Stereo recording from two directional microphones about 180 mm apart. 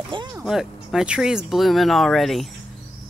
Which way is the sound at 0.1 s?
25° right (ahead or behind).